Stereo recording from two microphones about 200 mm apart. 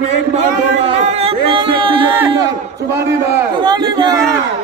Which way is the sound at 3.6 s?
20° right (ahead or behind).